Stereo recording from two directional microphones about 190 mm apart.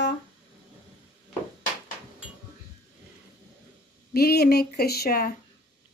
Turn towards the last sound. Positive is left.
turn(degrees=50)  # may be behind; listen again after turning